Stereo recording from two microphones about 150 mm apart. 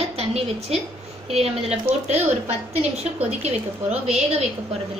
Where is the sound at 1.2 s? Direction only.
45° right (ahead or behind).